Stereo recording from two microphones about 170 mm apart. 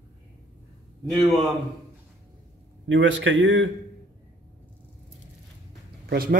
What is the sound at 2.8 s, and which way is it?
Speech, 90° right.